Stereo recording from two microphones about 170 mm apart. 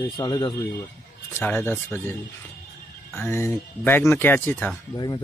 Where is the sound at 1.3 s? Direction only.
10° left (ahead or behind).